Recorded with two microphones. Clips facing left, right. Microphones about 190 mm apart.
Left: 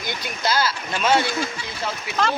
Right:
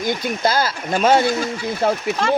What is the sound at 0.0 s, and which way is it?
Speech, 50° right (ahead or behind).